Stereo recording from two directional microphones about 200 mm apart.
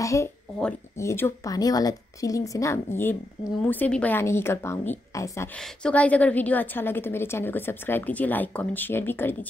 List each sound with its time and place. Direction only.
0.0 s a woman's voice: 15° left (ahead or behind)